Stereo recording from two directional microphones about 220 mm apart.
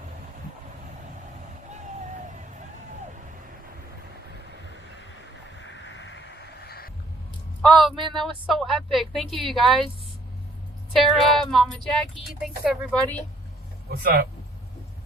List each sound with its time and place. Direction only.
1.7 s hubbub: 35° right (ahead or behind)
5.5 s a sound: 60° left (ahead or behind)
7.6 s speech: centre (ahead or behind)
10.9 s speech: centre (ahead or behind)
12.9 s speech: 5° left (ahead or behind)
13.9 s speech: 45° right (ahead or behind)